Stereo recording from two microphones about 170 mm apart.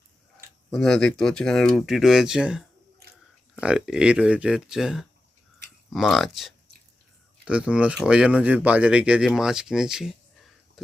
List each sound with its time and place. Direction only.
0.7 s speech: centre (ahead or behind)